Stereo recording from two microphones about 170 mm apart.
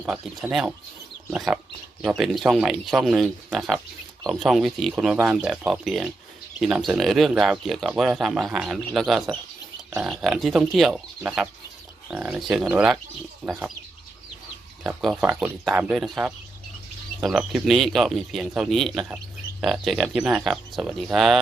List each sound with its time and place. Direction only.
0.0 s speech: 5° right (ahead or behind)
12.0 s speech: 5° right (ahead or behind)
14.8 s speech: 5° right (ahead or behind)